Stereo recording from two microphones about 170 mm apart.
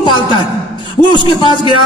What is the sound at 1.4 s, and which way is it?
Speech, 30° left (ahead or behind).